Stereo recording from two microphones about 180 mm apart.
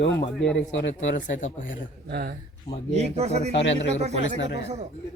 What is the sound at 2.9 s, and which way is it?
Speech, 35° right (ahead or behind).